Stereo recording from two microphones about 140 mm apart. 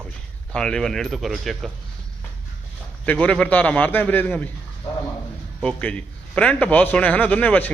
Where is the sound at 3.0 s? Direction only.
10° left (ahead or behind).